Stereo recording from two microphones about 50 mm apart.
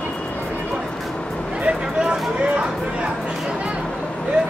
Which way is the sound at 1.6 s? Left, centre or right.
Centre.